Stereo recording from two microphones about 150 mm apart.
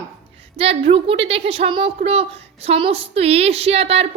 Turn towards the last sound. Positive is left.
turn(degrees=-45)  # may be behind; listen again after turning